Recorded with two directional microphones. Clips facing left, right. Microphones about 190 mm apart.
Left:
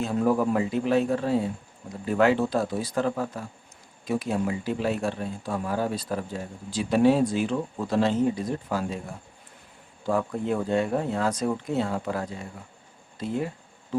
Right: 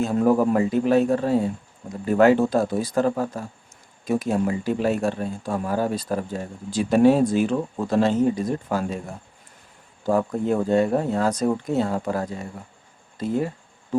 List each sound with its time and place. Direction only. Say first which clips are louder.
0.0 s speech: right 4 dB; 45° right (ahead or behind)
10.1 s speech: right 4 dB; 40° right (ahead or behind)